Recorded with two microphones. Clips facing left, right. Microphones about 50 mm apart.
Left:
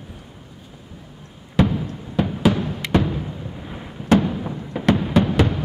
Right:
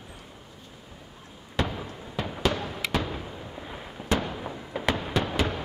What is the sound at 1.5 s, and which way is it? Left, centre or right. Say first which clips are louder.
Basketball bounce: left 10 dB; centre.